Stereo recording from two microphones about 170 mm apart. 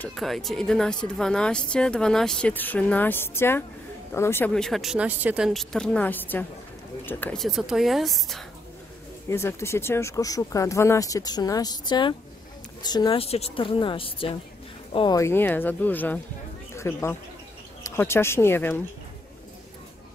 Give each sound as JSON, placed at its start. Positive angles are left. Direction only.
{"t": 0.0, "sound": "speech", "side_deg": 0}
{"t": 9.3, "sound": "a woman's voice", "side_deg": 15}
{"t": 15.1, "sound": "speech", "side_deg": 15}